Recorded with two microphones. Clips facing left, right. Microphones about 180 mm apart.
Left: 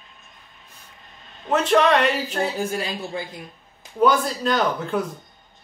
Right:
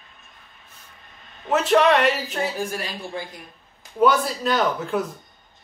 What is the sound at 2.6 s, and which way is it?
Speech, 25° left (ahead or behind).